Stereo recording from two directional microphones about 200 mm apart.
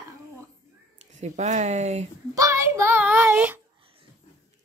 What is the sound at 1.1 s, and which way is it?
Speech, 35° right (ahead or behind).